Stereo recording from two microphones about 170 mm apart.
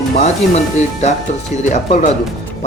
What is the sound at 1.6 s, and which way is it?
Speech, 45° left (ahead or behind).